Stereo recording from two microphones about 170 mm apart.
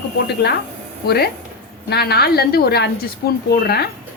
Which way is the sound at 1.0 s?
70° left (ahead or behind).